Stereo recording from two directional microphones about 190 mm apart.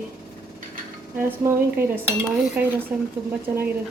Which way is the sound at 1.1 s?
10° right (ahead or behind).